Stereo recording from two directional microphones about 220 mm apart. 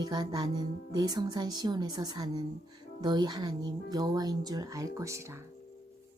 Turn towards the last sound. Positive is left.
turn(degrees=-10)  # may be behind; listen again after turning